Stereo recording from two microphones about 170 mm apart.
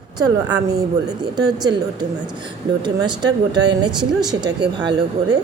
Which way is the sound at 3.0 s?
25° right (ahead or behind).